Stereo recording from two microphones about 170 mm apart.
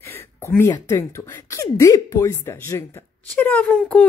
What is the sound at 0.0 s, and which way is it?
Speech, 15° left (ahead or behind).